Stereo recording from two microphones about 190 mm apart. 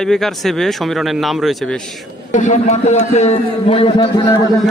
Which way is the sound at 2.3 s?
40° left (ahead or behind).